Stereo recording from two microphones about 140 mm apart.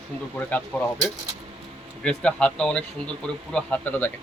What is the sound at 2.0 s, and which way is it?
A man's voice, 5° left (ahead or behind).